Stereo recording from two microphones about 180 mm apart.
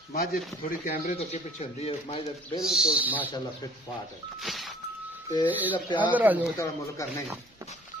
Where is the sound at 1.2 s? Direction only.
35° left (ahead or behind).